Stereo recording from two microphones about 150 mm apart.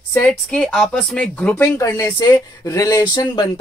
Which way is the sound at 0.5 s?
5° left (ahead or behind).